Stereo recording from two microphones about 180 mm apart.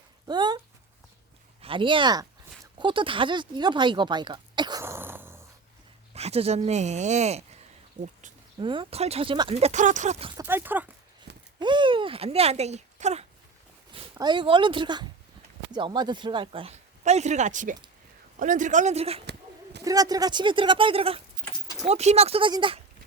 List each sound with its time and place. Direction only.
0.3 s a sound: 25° right (ahead or behind)
1.6 s speech: 30° right (ahead or behind); by 5.4 s 10° right (ahead or behind)
6.1 s speech: 35° right (ahead or behind)
8.0 s speech: 25° right (ahead or behind)
10.3 s speech: 10° right (ahead or behind)
11.3 s a sound: 70° right (ahead or behind)
11.6 s speech: 25° right (ahead or behind)
13.9 s speech: 25° right (ahead or behind)
19.2 s a sound: 70° right (ahead or behind)
19.8 s speech: 20° right (ahead or behind)